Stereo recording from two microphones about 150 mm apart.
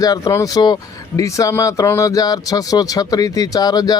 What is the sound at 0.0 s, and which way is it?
Speech, 20° left (ahead or behind).